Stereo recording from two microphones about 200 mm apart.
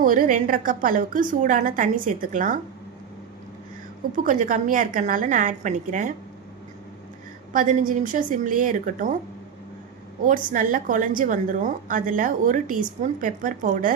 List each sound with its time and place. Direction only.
0.0 s a woman's voice: 45° right (ahead or behind)
4.1 s a woman's voice: 40° right (ahead or behind)
7.5 s a woman's voice: 40° right (ahead or behind)
10.2 s a woman's voice: 40° right (ahead or behind)